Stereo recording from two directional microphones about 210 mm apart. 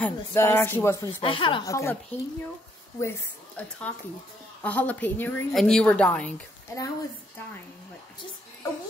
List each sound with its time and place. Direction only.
0.0 s a woman's voice: 10° left (ahead or behind)
1.2 s speech: 25° left (ahead or behind)
3.0 s a woman's voice: 10° left (ahead or behind)